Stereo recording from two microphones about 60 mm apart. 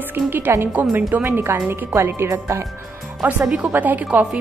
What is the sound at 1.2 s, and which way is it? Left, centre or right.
A woman's voice, right.